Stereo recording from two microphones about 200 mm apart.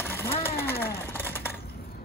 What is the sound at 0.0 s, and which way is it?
Vehicle, 10° left (ahead or behind).